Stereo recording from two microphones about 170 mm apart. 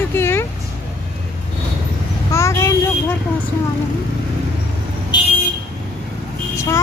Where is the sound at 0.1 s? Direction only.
15° left (ahead or behind).